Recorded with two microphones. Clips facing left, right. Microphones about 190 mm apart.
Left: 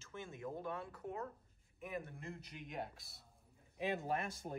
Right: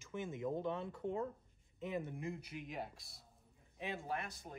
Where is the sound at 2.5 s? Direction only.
Centre (ahead or behind).